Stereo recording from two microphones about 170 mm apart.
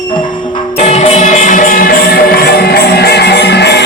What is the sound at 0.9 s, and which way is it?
Music, 40° left (ahead or behind).